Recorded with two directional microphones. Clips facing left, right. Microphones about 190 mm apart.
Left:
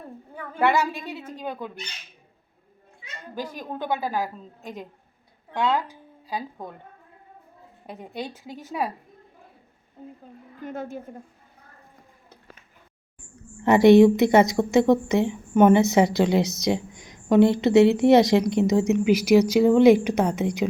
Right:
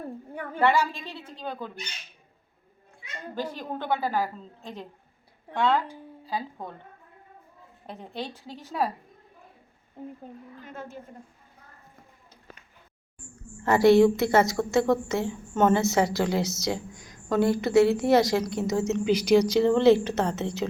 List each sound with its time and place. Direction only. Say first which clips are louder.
3.3 s a woman's voice: even; 15° left (ahead or behind)
7.9 s a woman's voice: left 2 dB; 10° left (ahead or behind)
13.7 s a woman's voice: left 4 dB; 20° left (ahead or behind)